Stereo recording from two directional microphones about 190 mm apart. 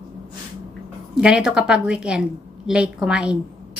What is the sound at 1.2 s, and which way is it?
A woman's voice, 5° right (ahead or behind).